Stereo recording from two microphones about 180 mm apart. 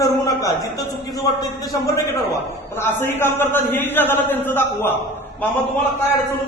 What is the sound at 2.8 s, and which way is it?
A man's voice, 15° left (ahead or behind).